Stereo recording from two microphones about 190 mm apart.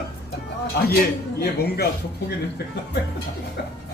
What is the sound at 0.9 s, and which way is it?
Speech, 55° left (ahead or behind).